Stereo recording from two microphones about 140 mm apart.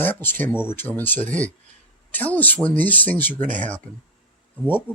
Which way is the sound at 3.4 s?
65° right (ahead or behind).